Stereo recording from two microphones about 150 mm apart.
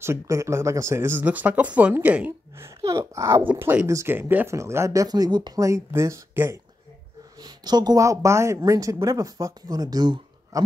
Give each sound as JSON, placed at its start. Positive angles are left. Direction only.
{"t": 0.0, "sound": "speech", "side_deg": -20}
{"t": 7.3, "sound": "speech", "side_deg": -25}